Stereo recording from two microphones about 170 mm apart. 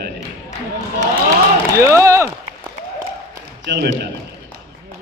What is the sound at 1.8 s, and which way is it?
Speech, 20° right (ahead or behind).